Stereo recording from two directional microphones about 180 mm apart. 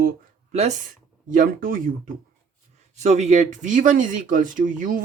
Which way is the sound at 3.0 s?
40° right (ahead or behind).